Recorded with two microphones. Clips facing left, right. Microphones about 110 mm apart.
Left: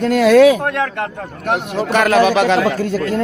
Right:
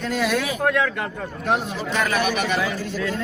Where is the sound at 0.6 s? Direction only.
55° left (ahead or behind).